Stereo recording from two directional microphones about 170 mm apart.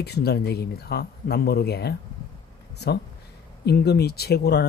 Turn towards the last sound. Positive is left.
turn(degrees=70)  # may be behind; listen again after turning